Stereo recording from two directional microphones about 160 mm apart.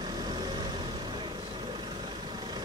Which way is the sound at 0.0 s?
25° right (ahead or behind).